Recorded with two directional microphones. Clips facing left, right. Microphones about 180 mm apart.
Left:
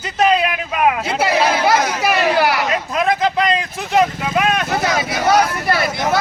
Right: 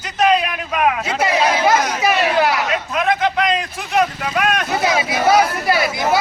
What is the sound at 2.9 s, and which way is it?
A man's voice, 35° left (ahead or behind).